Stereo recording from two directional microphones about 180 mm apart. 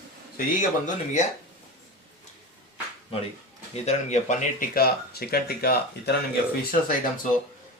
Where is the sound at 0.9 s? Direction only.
40° left (ahead or behind).